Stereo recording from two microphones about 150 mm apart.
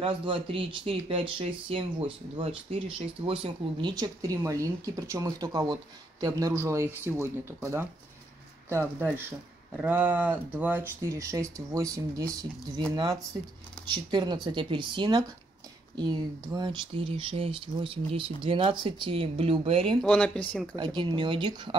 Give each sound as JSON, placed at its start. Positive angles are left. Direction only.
{"t": 0.0, "sound": "speech", "side_deg": -35}
{"t": 3.9, "sound": "speech", "side_deg": -25}
{"t": 20.0, "sound": "speech", "side_deg": 5}
{"t": 20.7, "sound": "speech", "side_deg": -30}